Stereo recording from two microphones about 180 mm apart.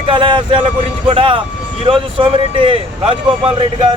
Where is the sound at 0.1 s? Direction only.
25° right (ahead or behind).